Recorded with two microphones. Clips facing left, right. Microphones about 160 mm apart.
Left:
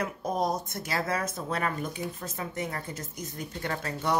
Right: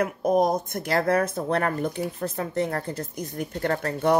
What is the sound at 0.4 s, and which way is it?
Speech, 55° right (ahead or behind).